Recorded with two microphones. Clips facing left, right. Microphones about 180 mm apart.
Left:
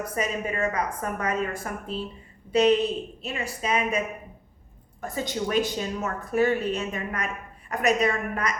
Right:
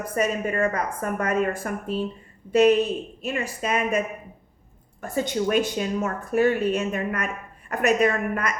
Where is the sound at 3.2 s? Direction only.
50° right (ahead or behind).